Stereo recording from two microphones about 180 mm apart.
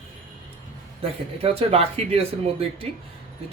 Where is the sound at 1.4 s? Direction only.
35° right (ahead or behind).